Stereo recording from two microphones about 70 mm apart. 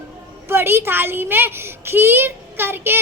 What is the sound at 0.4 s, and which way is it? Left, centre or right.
A child's voice, right.